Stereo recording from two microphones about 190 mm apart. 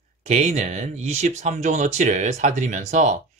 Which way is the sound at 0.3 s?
35° right (ahead or behind).